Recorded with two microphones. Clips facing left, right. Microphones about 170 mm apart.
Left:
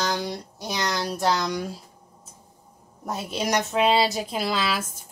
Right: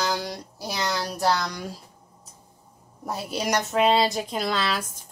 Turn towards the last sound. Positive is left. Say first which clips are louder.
# even
turn(degrees=5)  # may be behind; listen again after turning